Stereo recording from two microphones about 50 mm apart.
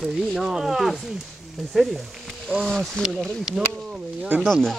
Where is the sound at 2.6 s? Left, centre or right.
Centre.